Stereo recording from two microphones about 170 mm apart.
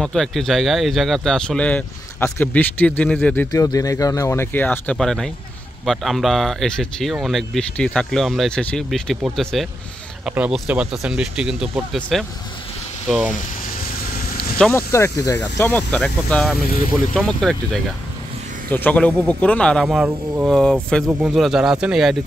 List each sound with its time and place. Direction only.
0.0 s speech: 5° left (ahead or behind)
3.6 s speech: 20° left (ahead or behind); by 12.3 s centre (ahead or behind)
14.6 s speech: 15° left (ahead or behind)
16.5 s speech: 60° left (ahead or behind)
17.1 s speech: 5° left (ahead or behind)
18.7 s speech: 10° left (ahead or behind)